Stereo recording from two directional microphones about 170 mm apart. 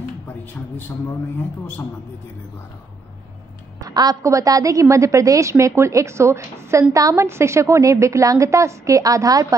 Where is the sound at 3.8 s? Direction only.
20° right (ahead or behind).